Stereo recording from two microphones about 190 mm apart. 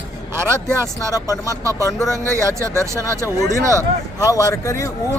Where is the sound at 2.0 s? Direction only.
15° right (ahead or behind).